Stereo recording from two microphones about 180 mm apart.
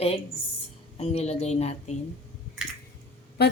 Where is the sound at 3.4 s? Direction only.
65° left (ahead or behind).